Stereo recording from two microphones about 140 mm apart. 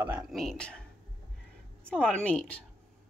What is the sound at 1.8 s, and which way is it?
Speech, 5° left (ahead or behind).